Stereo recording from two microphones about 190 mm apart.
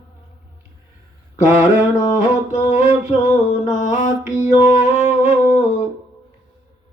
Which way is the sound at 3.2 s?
40° left (ahead or behind).